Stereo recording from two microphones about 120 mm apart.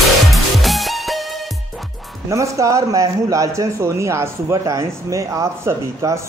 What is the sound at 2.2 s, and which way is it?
A man's voice, 25° right (ahead or behind).